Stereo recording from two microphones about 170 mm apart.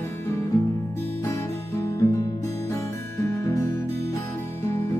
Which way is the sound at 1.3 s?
15° left (ahead or behind).